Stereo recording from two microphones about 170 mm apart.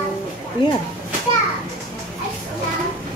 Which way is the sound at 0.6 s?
30° left (ahead or behind).